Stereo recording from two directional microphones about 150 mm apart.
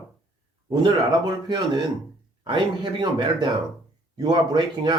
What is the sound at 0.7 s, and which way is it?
Speech, 30° right (ahead or behind).